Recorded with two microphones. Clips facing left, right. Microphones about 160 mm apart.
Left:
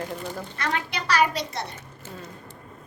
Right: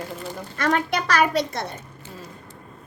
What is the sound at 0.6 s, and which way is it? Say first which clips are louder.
A woman's voice: right 8 dB; 50° right (ahead or behind).